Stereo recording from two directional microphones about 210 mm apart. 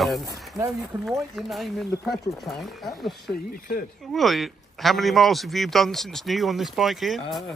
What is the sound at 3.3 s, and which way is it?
Speech, 40° left (ahead or behind).